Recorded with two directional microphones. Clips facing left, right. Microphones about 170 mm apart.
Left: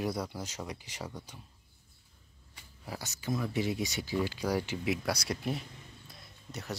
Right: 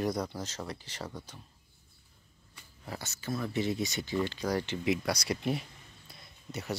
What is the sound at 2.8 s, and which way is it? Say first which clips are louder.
Speech: left 1 dB; 10° left (ahead or behind).